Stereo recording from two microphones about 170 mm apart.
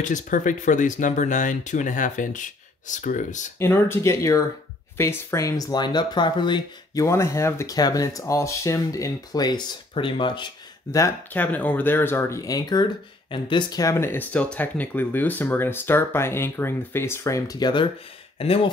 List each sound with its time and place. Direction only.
0.0 s speech: 50° left (ahead or behind)
3.5 s speech: 15° left (ahead or behind); by 18.7 s 35° left (ahead or behind)